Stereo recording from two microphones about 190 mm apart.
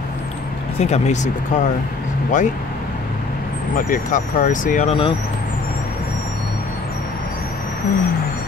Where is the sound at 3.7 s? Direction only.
45° left (ahead or behind).